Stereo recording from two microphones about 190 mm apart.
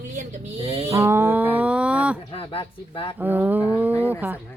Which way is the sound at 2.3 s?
30° left (ahead or behind).